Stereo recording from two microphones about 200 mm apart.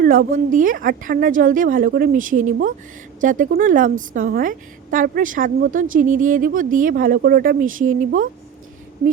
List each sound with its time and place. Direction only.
0.0 s a woman's voice: 45° right (ahead or behind)